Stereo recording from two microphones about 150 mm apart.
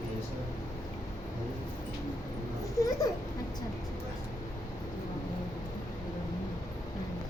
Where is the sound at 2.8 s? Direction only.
20° left (ahead or behind).